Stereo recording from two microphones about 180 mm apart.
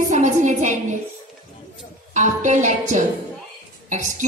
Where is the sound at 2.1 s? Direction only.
40° right (ahead or behind).